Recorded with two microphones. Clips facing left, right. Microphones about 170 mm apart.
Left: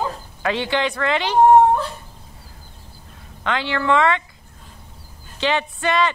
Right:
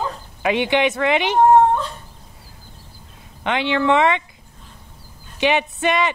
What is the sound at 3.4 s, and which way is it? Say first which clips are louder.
Speech: right 3 dB; 20° right (ahead or behind).